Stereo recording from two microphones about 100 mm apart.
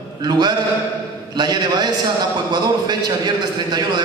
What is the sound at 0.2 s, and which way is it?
A man's voice, 45° right (ahead or behind).